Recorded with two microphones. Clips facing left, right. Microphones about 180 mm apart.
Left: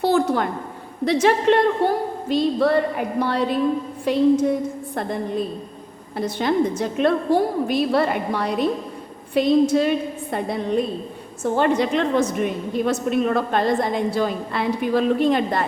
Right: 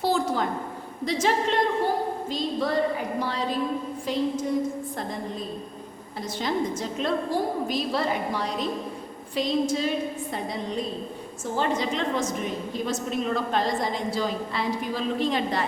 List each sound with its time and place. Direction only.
0.0 s a woman's voice: 65° left (ahead or behind)
6.1 s a woman's voice: 60° left (ahead or behind)